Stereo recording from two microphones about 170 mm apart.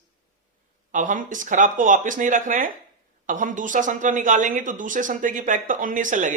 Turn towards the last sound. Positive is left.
turn(degrees=-50)  # may be behind; listen again after turning